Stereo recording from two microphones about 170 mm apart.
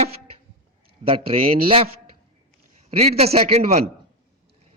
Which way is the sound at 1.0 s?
35° right (ahead or behind).